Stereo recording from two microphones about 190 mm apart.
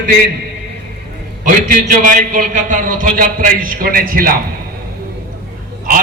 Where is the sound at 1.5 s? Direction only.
45° right (ahead or behind).